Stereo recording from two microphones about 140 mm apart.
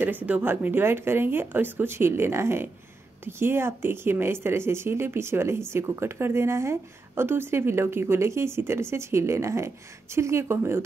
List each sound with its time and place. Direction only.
0.3 s speech: 15° right (ahead or behind)